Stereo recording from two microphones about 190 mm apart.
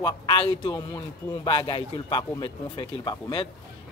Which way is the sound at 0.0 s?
20° left (ahead or behind).